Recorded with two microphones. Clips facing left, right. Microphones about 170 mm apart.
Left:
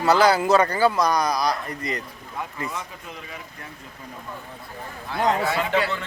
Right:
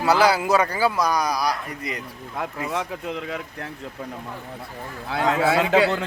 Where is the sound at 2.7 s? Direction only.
75° right (ahead or behind).